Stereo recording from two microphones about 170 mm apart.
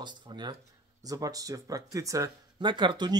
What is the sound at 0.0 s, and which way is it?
Speech, 25° right (ahead or behind).